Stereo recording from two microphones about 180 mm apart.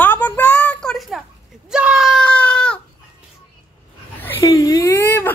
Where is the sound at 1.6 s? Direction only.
5° right (ahead or behind).